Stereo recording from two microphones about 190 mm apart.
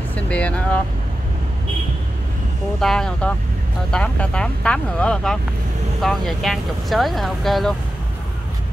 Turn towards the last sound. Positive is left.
turn(degrees=0)  # may be behind; listen again after turning